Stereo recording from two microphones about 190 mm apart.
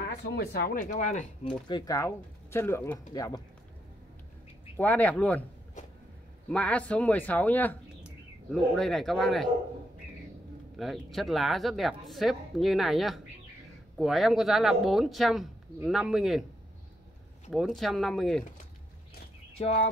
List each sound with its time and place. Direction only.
0.0 s speech: 60° left (ahead or behind); by 1.2 s 40° left (ahead or behind)
1.7 s speech: 20° left (ahead or behind)
4.7 s speech: 10° left (ahead or behind)
6.5 s speech: 5° left (ahead or behind)
10.8 s speech: centre (ahead or behind)
17.5 s speech: centre (ahead or behind)
19.6 s speech: 35° left (ahead or behind)